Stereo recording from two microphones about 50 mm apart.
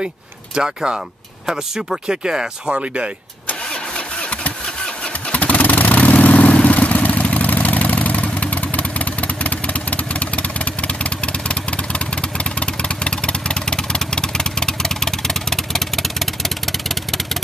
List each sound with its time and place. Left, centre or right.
0.6 s speech: centre
3.9 s engine starting: left
5.0 s vehicle: left; by 17.4 s centre